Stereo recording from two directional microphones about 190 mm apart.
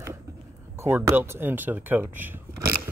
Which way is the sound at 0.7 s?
15° right (ahead or behind).